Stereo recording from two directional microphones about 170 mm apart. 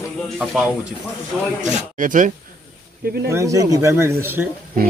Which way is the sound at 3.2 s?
15° right (ahead or behind).